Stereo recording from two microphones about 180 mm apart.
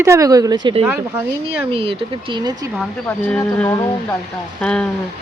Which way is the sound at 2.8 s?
5° left (ahead or behind).